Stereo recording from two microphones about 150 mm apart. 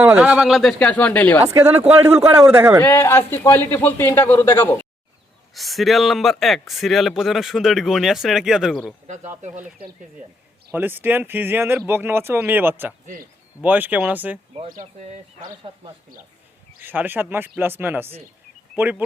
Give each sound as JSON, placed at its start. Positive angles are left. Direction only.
{"t": 0.0, "sound": "speech", "side_deg": -10}
{"t": 1.5, "sound": "speech", "side_deg": -15}
{"t": 2.8, "sound": "a man's voice", "side_deg": 15}
{"t": 5.5, "sound": "speech", "side_deg": 0}
{"t": 10.7, "sound": "speech", "side_deg": -15}
{"t": 15.4, "sound": "speech", "side_deg": -30}
{"t": 16.8, "sound": "speech", "side_deg": -10}